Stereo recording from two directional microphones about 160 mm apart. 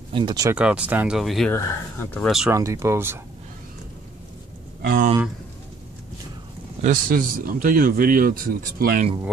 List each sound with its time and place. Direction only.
0.1 s speech: 30° right (ahead or behind)
0.6 s speech: 5° right (ahead or behind)
1.5 s speech: 15° left (ahead or behind)
2.5 s speech: 20° right (ahead or behind)
4.8 s speech: 60° right (ahead or behind)
6.8 s speech: 60° right (ahead or behind)